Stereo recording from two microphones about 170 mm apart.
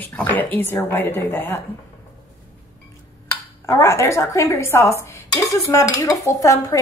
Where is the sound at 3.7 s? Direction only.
15° left (ahead or behind).